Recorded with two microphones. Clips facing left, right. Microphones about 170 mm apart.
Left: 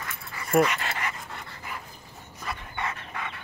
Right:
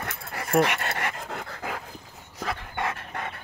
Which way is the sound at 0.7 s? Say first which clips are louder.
Right 2 dB; 60° right (ahead or behind).